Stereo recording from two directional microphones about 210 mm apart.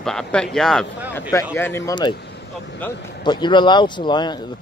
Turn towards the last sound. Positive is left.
turn(degrees=20)  # may be behind; listen again after turning